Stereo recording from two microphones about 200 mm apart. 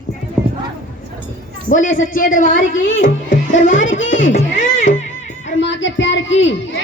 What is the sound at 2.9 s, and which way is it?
Music, 70° left (ahead or behind).